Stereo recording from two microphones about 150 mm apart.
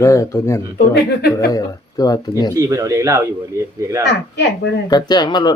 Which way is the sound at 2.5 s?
25° right (ahead or behind).